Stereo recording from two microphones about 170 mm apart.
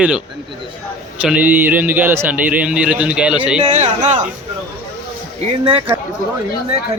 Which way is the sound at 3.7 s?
45° right (ahead or behind).